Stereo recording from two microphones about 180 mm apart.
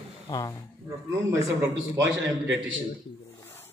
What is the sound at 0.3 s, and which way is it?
Speech, 20° left (ahead or behind).